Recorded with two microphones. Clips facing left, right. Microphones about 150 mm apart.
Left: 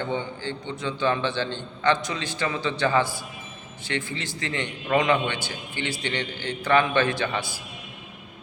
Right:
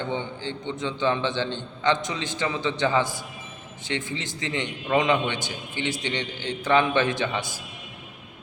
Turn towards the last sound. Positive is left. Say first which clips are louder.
# even
turn(degrees=-20)  # may be behind; listen again after turning